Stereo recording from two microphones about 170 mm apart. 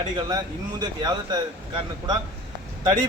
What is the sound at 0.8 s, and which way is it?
A man's voice, 25° right (ahead or behind).